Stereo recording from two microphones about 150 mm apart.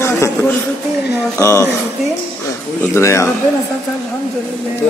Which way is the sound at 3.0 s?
20° left (ahead or behind).